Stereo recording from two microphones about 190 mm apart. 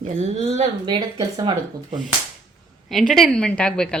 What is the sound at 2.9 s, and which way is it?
A woman's voice, centre (ahead or behind).